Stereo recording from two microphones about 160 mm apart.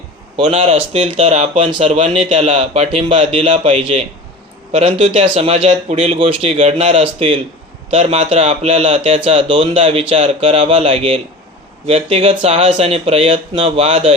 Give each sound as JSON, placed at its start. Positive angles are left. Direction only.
{"t": 0.3, "sound": "speech", "side_deg": -35}